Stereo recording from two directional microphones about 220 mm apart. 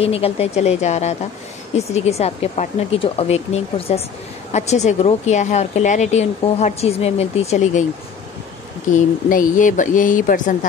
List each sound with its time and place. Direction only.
0.0 s a woman's voice: 25° left (ahead or behind)
8.9 s a woman's voice: 35° left (ahead or behind)